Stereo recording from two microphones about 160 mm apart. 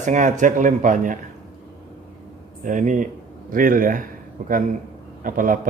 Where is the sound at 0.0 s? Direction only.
50° right (ahead or behind).